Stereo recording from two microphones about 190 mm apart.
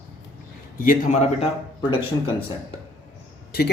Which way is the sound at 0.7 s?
45° left (ahead or behind).